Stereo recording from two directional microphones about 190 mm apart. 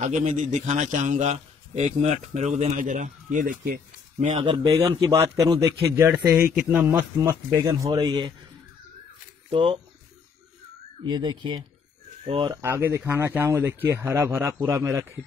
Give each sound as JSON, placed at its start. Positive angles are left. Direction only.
{"t": 0.0, "sound": "a man's voice", "side_deg": -40}
{"t": 4.4, "sound": "a man's voice", "side_deg": -20}
{"t": 9.5, "sound": "a man's voice", "side_deg": -30}
{"t": 11.1, "sound": "a man's voice", "side_deg": -25}
{"t": 12.6, "sound": "a man's voice", "side_deg": -15}